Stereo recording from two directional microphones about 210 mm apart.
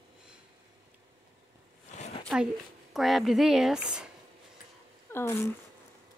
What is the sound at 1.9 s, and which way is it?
Zipper, 35° left (ahead or behind).